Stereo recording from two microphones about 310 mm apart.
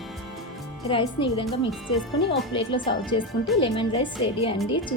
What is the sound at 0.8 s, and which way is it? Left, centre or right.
Speech, centre.